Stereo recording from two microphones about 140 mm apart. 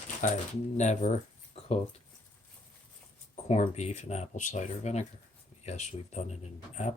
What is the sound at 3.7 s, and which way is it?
Speech, 50° left (ahead or behind).